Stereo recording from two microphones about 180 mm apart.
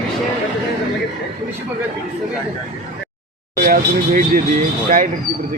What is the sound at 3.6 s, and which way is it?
Speech, 50° right (ahead or behind).